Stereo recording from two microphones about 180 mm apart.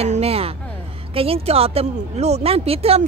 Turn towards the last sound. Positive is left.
turn(degrees=-35)  # may be behind; listen again after turning